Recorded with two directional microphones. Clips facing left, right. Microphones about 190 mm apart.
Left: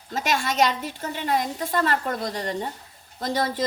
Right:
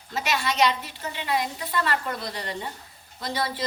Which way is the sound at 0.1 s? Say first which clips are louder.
Left 2 dB; 45° left (ahead or behind).